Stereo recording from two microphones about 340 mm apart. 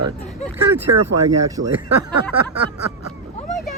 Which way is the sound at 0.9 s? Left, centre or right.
Right.